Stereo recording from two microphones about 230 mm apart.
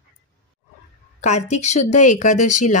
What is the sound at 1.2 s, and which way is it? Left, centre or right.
Speech, left.